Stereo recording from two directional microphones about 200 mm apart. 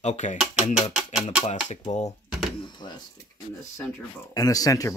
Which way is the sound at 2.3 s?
Centre (ahead or behind).